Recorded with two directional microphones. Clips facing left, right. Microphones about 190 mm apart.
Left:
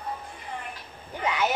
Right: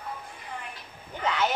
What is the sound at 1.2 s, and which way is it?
Speech, 10° left (ahead or behind).